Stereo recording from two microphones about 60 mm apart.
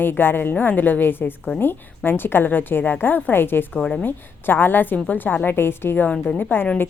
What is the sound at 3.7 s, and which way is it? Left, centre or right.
Speech, centre.